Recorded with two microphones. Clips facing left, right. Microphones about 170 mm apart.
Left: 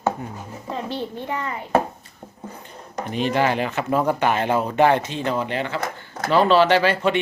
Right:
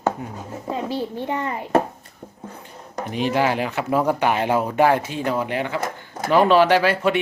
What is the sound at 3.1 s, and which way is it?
Speech, 10° right (ahead or behind).